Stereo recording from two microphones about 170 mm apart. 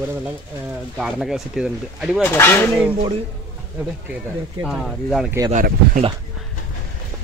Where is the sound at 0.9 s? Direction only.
5° right (ahead or behind).